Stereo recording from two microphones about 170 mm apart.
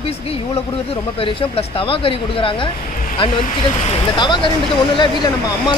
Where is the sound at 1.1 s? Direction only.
30° left (ahead or behind).